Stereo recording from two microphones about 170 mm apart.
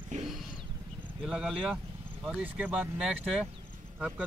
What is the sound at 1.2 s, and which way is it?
A man's voice, centre (ahead or behind).